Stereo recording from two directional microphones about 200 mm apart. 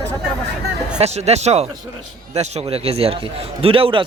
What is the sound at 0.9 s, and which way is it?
A man's voice, 35° right (ahead or behind).